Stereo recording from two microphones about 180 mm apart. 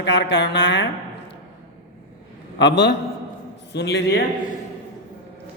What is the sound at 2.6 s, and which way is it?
Speech, 75° left (ahead or behind).